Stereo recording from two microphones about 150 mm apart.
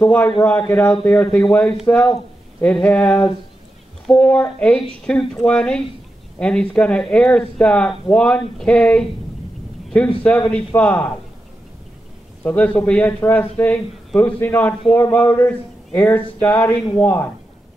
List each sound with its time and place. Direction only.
0.0 s a man's voice: 10° left (ahead or behind)
12.4 s speech: 10° left (ahead or behind)